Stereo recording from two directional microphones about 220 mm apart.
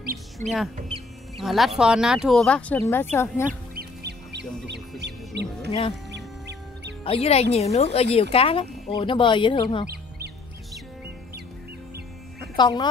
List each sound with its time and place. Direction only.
0.4 s speech: 10° left (ahead or behind)
1.4 s speech: centre (ahead or behind)
3.4 s goose: 45° right (ahead or behind)
5.0 s music: 50° right (ahead or behind)
5.7 s speech: 20° left (ahead or behind)
6.1 s duck: 50° right (ahead or behind)
7.1 s speech: 25° left (ahead or behind)
9.8 s duck: 45° right (ahead or behind)
12.5 s speech: 20° left (ahead or behind)